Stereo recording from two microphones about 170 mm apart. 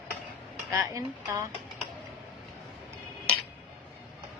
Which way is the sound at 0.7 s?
15° right (ahead or behind).